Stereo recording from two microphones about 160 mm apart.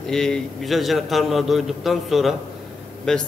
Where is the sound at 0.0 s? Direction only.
5° left (ahead or behind).